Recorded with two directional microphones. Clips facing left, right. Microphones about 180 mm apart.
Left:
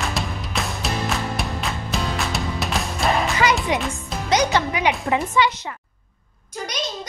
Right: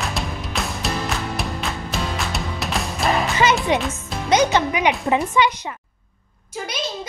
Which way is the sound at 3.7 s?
25° right (ahead or behind).